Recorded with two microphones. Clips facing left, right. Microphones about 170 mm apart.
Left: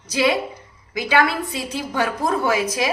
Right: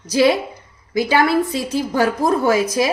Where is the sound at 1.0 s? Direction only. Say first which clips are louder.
Right 4 dB; 35° right (ahead or behind).